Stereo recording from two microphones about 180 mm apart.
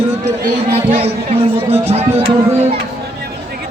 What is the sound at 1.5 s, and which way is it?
Music, 35° right (ahead or behind).